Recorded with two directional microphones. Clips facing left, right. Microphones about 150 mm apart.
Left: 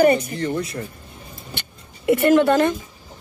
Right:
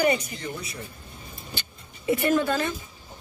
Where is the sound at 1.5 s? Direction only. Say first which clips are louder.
Left 3 dB; 75° left (ahead or behind).